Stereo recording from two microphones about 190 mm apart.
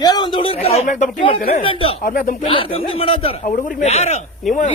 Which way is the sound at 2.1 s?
45° left (ahead or behind).